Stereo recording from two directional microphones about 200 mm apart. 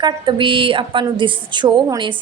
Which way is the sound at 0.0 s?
25° right (ahead or behind).